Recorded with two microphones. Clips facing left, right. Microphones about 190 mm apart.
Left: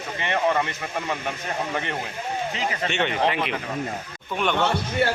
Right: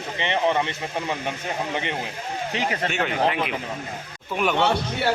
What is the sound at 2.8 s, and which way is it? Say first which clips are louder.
Speech: left 1 dB; 5° right (ahead or behind).